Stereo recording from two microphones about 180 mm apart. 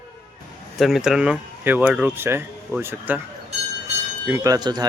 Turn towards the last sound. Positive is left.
turn(degrees=-20)  # may be behind; listen again after turning